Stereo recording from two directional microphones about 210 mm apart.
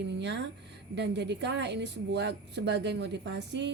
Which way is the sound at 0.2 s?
55° right (ahead or behind).